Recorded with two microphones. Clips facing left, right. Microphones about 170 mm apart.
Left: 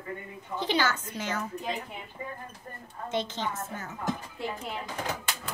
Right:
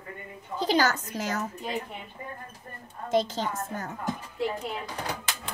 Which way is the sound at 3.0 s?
40° right (ahead or behind).